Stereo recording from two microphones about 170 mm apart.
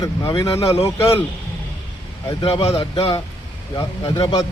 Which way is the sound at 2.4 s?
35° left (ahead or behind).